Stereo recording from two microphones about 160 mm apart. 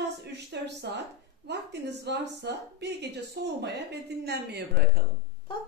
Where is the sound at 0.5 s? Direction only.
90° right.